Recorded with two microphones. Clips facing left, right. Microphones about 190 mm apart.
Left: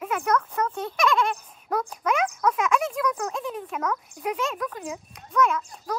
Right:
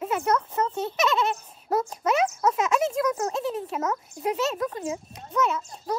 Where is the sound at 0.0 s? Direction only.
30° right (ahead or behind).